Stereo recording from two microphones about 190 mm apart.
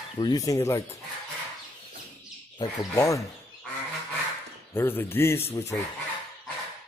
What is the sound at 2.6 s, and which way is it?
Speech, 15° left (ahead or behind).